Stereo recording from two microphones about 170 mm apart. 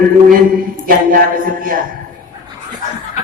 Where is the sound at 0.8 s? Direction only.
55° right (ahead or behind).